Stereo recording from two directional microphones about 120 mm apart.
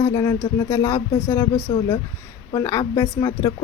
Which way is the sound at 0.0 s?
30° left (ahead or behind).